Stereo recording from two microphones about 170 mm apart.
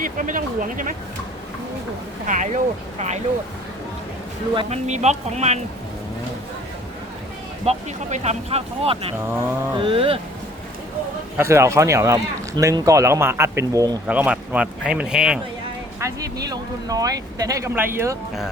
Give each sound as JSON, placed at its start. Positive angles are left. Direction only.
{"t": 0.0, "sound": "speech", "side_deg": -50}
{"t": 2.2, "sound": "speech", "side_deg": -45}
{"t": 4.5, "sound": "speech", "side_deg": -40}
{"t": 7.6, "sound": "speech", "side_deg": -40}
{"t": 11.3, "sound": "speech", "side_deg": -15}
{"t": 14.1, "sound": "speech", "side_deg": -5}
{"t": 16.0, "sound": "speech", "side_deg": -20}